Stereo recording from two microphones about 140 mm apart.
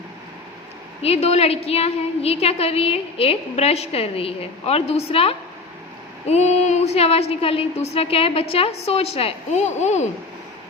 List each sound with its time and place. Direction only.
1.0 s a woman's voice: 45° left (ahead or behind)